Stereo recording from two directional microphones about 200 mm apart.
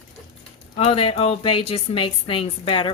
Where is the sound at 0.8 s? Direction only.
30° left (ahead or behind).